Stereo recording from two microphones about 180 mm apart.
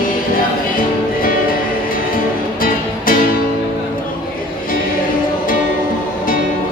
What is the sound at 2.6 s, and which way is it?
Music, 50° left (ahead or behind).